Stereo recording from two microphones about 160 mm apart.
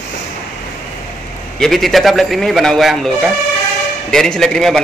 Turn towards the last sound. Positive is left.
turn(degrees=5)  # may be behind; listen again after turning